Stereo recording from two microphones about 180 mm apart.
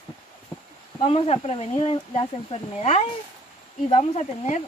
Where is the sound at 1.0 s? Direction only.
30° left (ahead or behind).